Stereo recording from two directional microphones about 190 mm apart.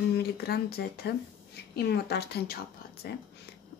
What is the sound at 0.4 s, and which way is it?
Speech, 55° left (ahead or behind).